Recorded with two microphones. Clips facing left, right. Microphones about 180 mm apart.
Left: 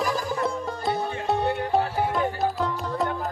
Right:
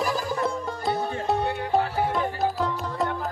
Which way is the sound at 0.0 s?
Centre (ahead or behind).